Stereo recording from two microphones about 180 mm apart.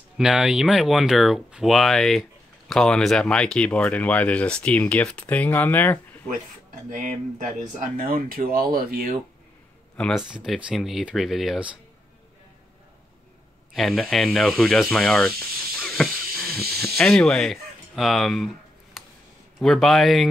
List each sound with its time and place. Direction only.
0.2 s speech: 5° right (ahead or behind)
6.9 s speech: 45° right (ahead or behind)
9.9 s speech: centre (ahead or behind)
13.7 s speech: centre (ahead or behind)
15.8 s a sound: centre (ahead or behind)
16.3 s hiss: centre (ahead or behind)
16.8 s speech: 5° left (ahead or behind)
19.0 s a sound: centre (ahead or behind)
19.6 s speech: centre (ahead or behind)